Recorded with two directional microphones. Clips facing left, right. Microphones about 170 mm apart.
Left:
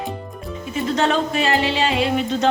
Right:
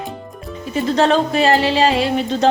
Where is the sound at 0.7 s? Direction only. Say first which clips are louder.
Right 4 dB; 35° right (ahead or behind).